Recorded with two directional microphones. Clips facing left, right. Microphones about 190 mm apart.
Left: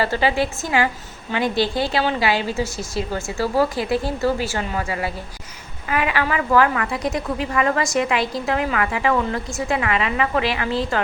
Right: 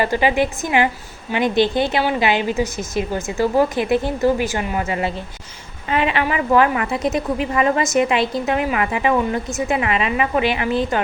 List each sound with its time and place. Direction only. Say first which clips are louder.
0.0 s a woman's voice: right 2 dB; 15° right (ahead or behind)